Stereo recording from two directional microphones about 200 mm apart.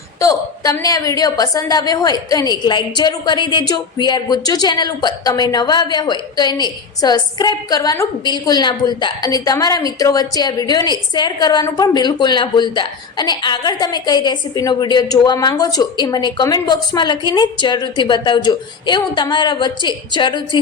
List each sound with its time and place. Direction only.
0.2 s a woman's voice: 15° left (ahead or behind)